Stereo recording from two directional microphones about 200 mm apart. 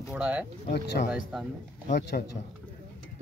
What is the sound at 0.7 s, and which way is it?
Speech, 55° left (ahead or behind).